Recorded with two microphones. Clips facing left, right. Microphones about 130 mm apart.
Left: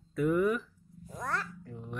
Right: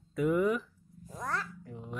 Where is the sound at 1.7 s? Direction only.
15° right (ahead or behind).